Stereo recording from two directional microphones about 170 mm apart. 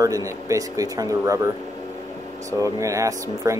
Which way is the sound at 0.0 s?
20° right (ahead or behind).